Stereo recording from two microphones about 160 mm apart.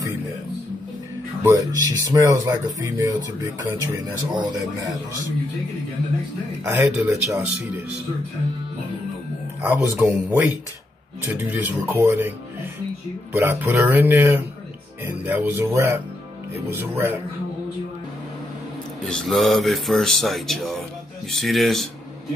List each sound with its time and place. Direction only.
1.4 s speech: 20° right (ahead or behind)
6.6 s speech: 15° right (ahead or behind)
9.6 s speech: 10° right (ahead or behind)
19.0 s speech: centre (ahead or behind)